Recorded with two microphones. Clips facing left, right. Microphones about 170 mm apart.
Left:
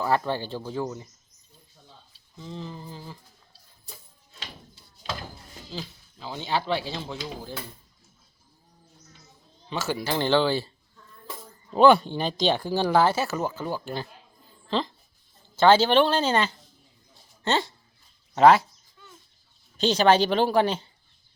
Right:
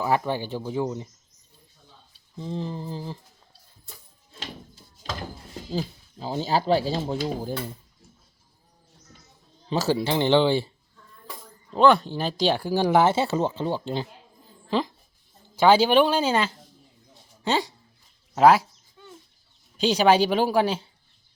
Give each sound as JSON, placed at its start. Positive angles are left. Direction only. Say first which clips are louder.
{"t": 0.0, "sound": "speech", "louder": "right 1 dB", "side_deg": -15}
{"t": 2.4, "sound": "speech", "louder": "right 6 dB", "side_deg": -35}
{"t": 5.7, "sound": "speech", "louder": "right 8 dB", "side_deg": -40}
{"t": 9.6, "sound": "speech", "louder": "right 5 dB", "side_deg": -35}
{"t": 11.7, "sound": "speech", "louder": "left 1 dB", "side_deg": 5}
{"t": 14.7, "sound": "speech", "louder": "right 2 dB", "side_deg": -10}
{"t": 19.7, "sound": "speech", "louder": "right 1 dB", "side_deg": -10}